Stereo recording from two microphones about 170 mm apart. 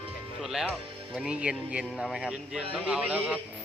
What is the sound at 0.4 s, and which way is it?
A man's voice, 5° right (ahead or behind).